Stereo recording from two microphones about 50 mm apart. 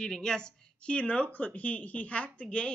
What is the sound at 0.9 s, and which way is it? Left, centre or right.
Speech, left.